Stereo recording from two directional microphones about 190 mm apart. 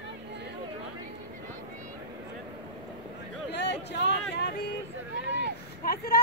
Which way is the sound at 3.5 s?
65° left (ahead or behind).